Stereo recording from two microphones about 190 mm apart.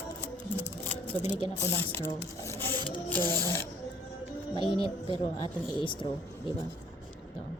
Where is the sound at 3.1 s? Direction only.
10° left (ahead or behind).